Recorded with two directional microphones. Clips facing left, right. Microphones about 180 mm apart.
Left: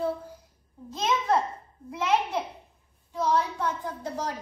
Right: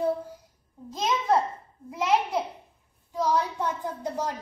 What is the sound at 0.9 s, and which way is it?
A child's voice, 10° right (ahead or behind).